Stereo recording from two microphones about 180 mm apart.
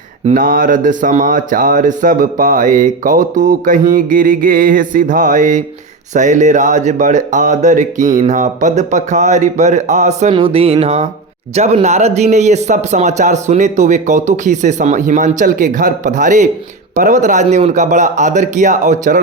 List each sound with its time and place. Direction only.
0.3 s speech: 50° right (ahead or behind)